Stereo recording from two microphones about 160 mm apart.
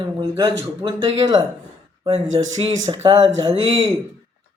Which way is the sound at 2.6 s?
30° right (ahead or behind).